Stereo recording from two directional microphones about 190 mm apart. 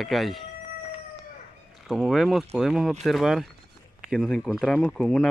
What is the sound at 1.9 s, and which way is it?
Speech, centre (ahead or behind).